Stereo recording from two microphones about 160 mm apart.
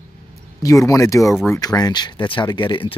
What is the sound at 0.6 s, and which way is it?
Speech, 20° left (ahead or behind).